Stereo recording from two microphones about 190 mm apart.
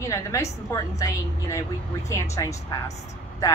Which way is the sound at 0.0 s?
15° left (ahead or behind).